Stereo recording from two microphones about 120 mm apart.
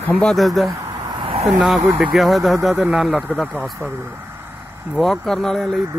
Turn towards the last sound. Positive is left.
turn(degrees=5)  # may be behind; listen again after turning